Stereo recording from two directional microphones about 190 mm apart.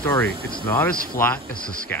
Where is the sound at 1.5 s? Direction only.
50° left (ahead or behind).